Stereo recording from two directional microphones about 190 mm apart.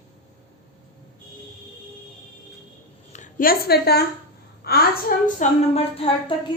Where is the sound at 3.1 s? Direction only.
45° left (ahead or behind).